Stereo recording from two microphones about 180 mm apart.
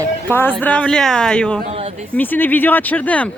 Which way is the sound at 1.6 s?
35° right (ahead or behind).